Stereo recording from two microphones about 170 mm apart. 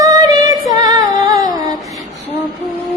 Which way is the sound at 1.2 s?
20° right (ahead or behind).